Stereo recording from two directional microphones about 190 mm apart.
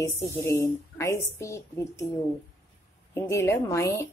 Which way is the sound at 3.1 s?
15° left (ahead or behind).